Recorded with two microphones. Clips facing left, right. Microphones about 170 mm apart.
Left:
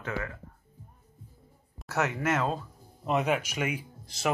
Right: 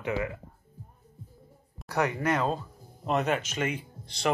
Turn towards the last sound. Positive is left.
turn(degrees=5)  # may be behind; listen again after turning